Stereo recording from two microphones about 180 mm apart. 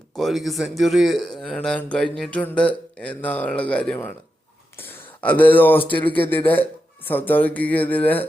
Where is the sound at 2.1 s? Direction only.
5° left (ahead or behind).